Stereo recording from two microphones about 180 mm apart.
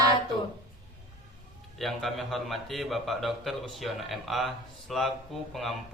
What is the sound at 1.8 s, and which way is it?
A man's voice, centre (ahead or behind).